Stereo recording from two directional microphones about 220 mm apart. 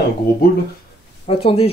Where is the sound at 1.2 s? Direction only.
25° left (ahead or behind).